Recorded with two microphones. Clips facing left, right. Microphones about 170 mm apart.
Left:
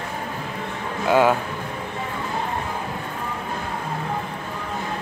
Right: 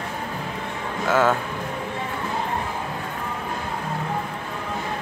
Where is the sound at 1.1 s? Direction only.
15° left (ahead or behind).